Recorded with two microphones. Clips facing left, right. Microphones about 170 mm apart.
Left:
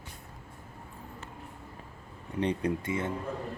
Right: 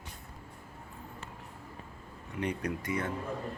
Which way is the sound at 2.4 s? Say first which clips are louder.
Left 4 dB; 25° left (ahead or behind).